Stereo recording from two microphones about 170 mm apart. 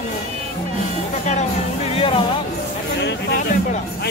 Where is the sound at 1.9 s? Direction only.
35° left (ahead or behind).